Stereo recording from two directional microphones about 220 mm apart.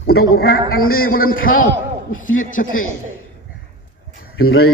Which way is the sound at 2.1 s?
65° left (ahead or behind).